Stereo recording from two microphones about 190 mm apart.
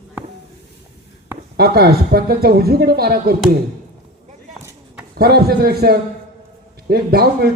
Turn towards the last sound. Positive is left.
turn(degrees=-55)  # may be behind; listen again after turning